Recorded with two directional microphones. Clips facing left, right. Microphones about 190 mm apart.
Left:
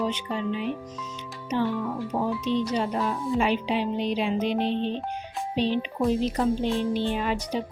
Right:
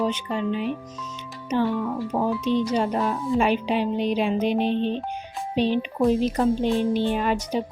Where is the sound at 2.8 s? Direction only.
50° right (ahead or behind).